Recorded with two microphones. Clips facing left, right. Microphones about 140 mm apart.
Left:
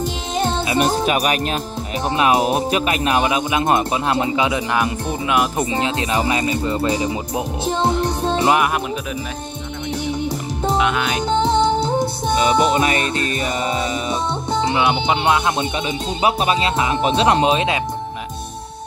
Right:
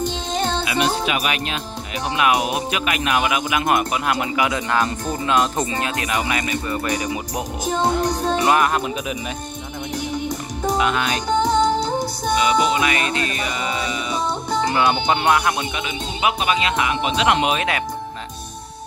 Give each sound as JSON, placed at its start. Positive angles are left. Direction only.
{"t": 0.0, "sound": "music", "side_deg": 5}
{"t": 0.7, "sound": "speech", "side_deg": 40}
{"t": 2.0, "sound": "speech", "side_deg": 30}
{"t": 5.7, "sound": "speech", "side_deg": 25}
{"t": 10.2, "sound": "music", "side_deg": 25}
{"t": 10.8, "sound": "music", "side_deg": 5}
{"t": 11.2, "sound": "music", "side_deg": 25}
{"t": 12.7, "sound": "speech", "side_deg": 40}
{"t": 14.5, "sound": "music", "side_deg": 25}
{"t": 14.8, "sound": "speech", "side_deg": 15}
{"t": 16.2, "sound": "speech", "side_deg": 35}